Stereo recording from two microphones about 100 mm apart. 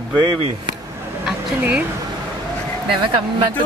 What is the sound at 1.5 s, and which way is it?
Speech, 15° right (ahead or behind).